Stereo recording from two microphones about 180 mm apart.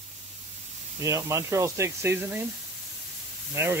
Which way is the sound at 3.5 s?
15° right (ahead or behind).